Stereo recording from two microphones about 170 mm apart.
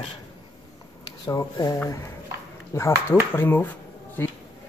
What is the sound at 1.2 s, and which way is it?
Speech, 20° left (ahead or behind).